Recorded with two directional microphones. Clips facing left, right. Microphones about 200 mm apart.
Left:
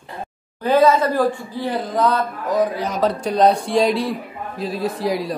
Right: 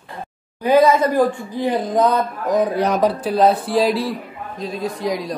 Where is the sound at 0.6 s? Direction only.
15° right (ahead or behind).